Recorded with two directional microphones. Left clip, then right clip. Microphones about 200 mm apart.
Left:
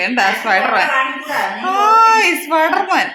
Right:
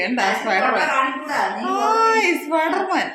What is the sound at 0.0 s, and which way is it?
A woman's voice, 25° left (ahead or behind).